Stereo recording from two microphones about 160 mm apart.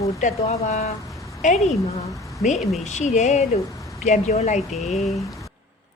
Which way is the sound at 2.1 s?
20° left (ahead or behind).